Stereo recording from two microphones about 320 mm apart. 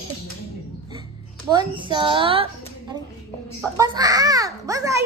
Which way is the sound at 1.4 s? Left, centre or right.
Centre.